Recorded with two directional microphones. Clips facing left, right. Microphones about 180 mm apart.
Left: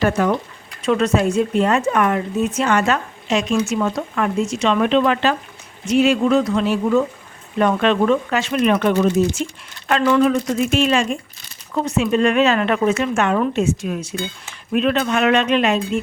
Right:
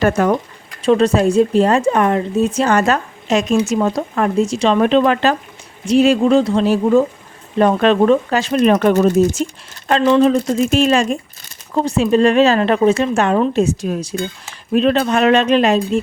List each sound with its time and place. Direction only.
0.0 s speech: 45° right (ahead or behind)
0.8 s speech: 30° right (ahead or behind)
10.0 s speech: 25° right (ahead or behind)